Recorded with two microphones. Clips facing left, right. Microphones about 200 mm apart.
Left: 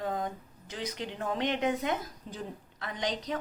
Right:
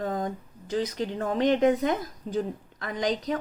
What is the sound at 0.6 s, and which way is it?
A woman's voice, 45° right (ahead or behind).